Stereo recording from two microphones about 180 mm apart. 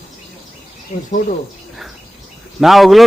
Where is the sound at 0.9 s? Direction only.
40° left (ahead or behind).